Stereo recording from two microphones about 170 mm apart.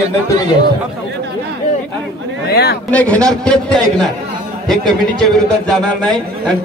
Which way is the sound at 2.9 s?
5° left (ahead or behind).